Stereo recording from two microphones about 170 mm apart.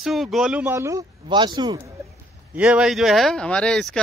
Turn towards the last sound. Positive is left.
turn(degrees=5)  # may be behind; listen again after turning